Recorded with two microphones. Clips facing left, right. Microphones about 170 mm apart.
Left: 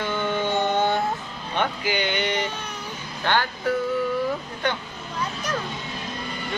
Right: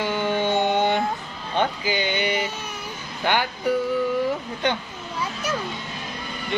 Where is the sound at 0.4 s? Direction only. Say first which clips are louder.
Right 1 dB; 20° right (ahead or behind).